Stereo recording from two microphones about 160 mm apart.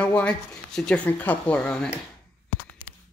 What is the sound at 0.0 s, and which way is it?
Speech, 10° left (ahead or behind).